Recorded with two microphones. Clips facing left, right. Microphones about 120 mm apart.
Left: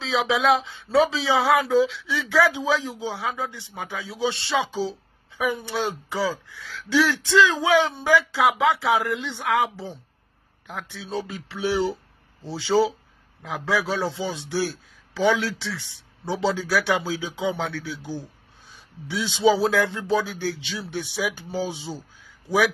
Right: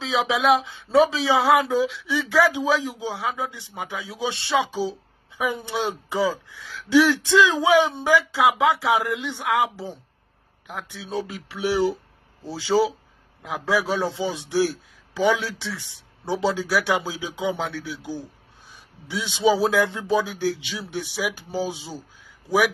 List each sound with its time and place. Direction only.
0.0 s a man's voice: 15° right (ahead or behind)